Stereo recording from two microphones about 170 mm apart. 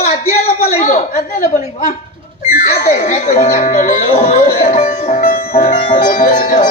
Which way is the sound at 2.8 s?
45° left (ahead or behind).